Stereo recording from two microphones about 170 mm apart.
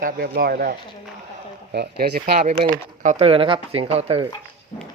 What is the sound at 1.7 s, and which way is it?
Speech, 65° right (ahead or behind).